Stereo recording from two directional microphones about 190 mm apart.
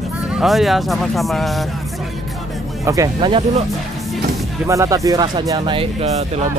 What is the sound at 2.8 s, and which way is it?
Speech, 15° right (ahead or behind).